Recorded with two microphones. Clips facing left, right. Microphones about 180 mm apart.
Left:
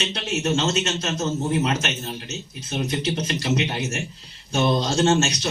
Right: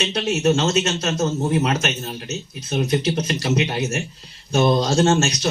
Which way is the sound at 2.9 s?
40° right (ahead or behind).